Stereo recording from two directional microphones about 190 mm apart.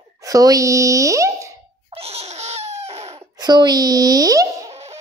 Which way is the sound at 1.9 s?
35° right (ahead or behind).